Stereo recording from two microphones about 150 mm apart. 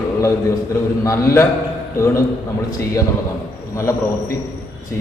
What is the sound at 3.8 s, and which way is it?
Speech, 20° left (ahead or behind).